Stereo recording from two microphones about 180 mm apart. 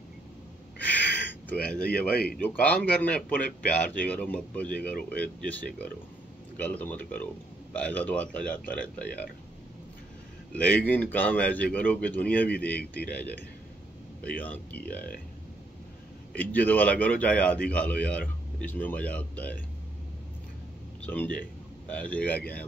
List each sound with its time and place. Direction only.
1.5 s speech: 5° left (ahead or behind)
1.9 s speech: 60° left (ahead or behind)
2.4 s speech: 10° left (ahead or behind)
10.5 s speech: 10° left (ahead or behind)
16.3 s speech: 10° left (ahead or behind)
21.0 s speech: 10° left (ahead or behind)